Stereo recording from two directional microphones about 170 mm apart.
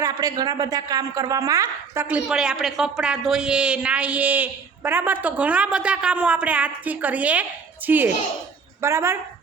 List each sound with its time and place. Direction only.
0.0 s a woman's voice: 20° right (ahead or behind)